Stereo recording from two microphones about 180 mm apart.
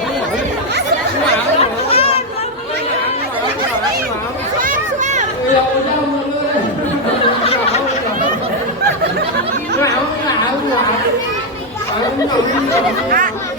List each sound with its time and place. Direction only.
1.5 s chatter: 35° left (ahead or behind)
4.6 s a sound: 45° right (ahead or behind)
13.1 s chatter: 50° right (ahead or behind)